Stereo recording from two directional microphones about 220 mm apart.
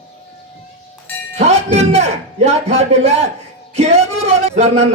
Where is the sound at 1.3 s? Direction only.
30° right (ahead or behind).